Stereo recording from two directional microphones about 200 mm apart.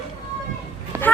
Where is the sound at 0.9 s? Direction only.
15° right (ahead or behind).